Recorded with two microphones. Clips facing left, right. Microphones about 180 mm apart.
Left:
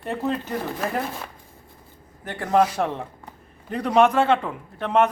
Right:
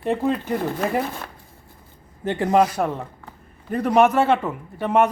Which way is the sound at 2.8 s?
Centre (ahead or behind).